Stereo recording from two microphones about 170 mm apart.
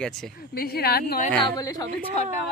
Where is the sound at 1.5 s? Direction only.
20° left (ahead or behind).